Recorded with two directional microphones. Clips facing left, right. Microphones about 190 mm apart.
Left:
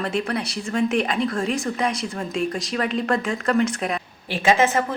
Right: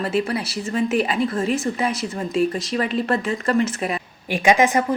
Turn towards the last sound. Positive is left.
turn(degrees=-15)  # may be behind; listen again after turning